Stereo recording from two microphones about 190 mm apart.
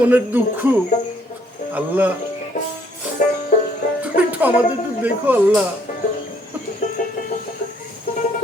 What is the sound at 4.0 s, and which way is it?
Music, 10° right (ahead or behind).